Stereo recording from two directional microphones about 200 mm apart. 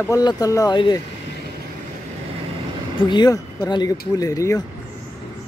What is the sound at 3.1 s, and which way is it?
Speech, 20° left (ahead or behind).